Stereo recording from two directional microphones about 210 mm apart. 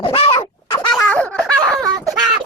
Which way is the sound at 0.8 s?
10° left (ahead or behind).